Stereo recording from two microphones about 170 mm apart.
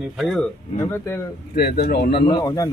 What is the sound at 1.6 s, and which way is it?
Speech, 65° left (ahead or behind).